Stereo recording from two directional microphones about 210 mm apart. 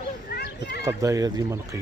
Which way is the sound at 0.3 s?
50° left (ahead or behind).